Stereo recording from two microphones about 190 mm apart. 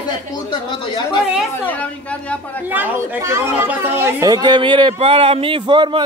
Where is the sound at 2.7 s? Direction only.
10° right (ahead or behind).